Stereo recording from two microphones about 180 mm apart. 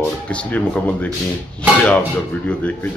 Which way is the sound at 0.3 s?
5° left (ahead or behind).